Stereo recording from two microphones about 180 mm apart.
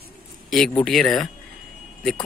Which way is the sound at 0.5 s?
Centre (ahead or behind).